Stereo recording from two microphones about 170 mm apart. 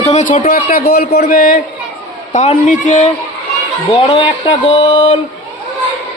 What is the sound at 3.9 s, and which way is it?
Speech, 25° left (ahead or behind).